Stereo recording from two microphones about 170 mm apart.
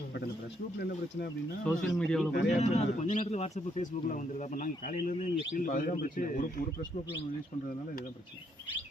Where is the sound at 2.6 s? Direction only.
40° left (ahead or behind); by 6.7 s 60° left (ahead or behind).